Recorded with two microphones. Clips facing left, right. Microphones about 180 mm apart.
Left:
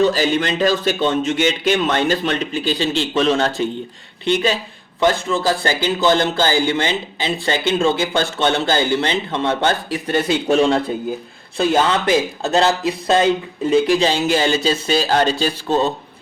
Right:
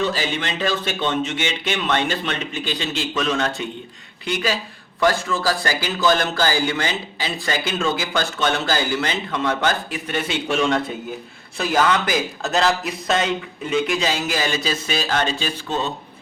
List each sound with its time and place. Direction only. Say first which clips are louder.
0.0 s speech: left 7 dB; 40° left (ahead or behind)